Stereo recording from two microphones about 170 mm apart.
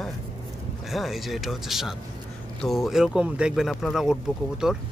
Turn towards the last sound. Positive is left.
turn(degrees=-5)  # may be behind; listen again after turning